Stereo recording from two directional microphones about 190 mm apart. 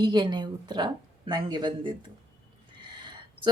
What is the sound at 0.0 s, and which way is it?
Speech, 25° right (ahead or behind).